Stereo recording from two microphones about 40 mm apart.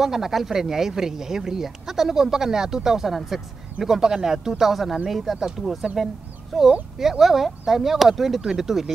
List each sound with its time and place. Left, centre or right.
0.0 s speech: centre